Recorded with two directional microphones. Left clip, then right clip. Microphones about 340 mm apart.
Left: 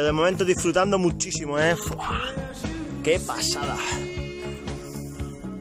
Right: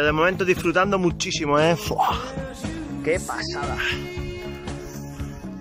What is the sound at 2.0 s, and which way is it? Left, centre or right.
Music, centre.